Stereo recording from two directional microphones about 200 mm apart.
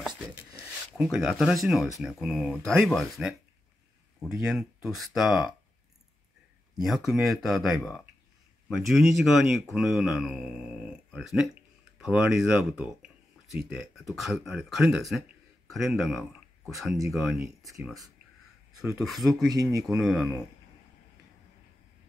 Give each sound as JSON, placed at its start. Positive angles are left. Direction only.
{"t": 0.9, "sound": "speech", "side_deg": -5}
{"t": 6.8, "sound": "speech", "side_deg": 0}
{"t": 18.9, "sound": "speech", "side_deg": 0}
{"t": 19.5, "sound": "speech", "side_deg": -20}
{"t": 19.9, "sound": "speech", "side_deg": 0}